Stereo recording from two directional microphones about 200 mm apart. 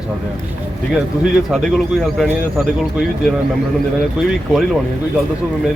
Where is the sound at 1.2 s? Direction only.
Centre (ahead or behind).